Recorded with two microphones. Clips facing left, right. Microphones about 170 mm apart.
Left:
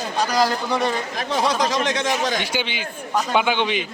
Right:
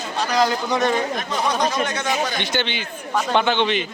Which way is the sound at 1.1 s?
90° left.